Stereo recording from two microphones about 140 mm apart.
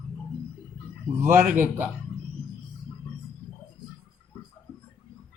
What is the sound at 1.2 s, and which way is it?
Speech, 15° right (ahead or behind).